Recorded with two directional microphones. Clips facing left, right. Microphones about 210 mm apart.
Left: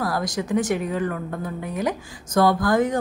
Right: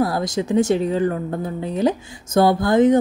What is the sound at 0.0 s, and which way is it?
A woman's voice, 25° right (ahead or behind).